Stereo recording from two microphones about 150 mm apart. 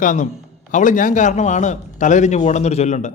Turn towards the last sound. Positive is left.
turn(degrees=50)  # may be behind; listen again after turning